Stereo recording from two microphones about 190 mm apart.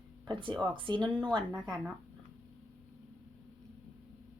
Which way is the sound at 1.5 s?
5° right (ahead or behind).